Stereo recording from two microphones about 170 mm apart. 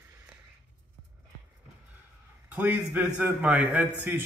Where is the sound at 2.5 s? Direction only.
10° right (ahead or behind).